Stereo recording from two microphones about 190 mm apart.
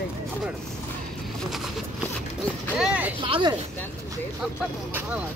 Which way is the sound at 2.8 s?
5° right (ahead or behind).